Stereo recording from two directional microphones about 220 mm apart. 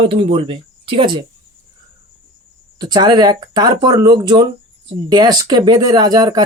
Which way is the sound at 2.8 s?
20° right (ahead or behind).